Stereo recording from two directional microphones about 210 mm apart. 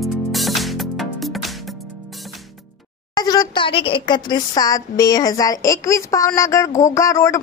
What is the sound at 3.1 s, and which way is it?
Speech, 20° left (ahead or behind).